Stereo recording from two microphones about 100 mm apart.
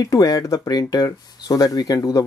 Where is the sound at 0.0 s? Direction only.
40° left (ahead or behind).